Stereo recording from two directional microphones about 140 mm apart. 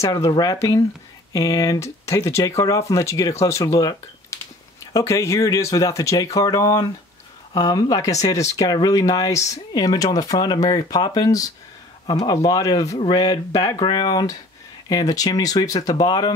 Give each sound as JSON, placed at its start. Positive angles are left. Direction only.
{"t": 0.0, "sound": "speech", "side_deg": 25}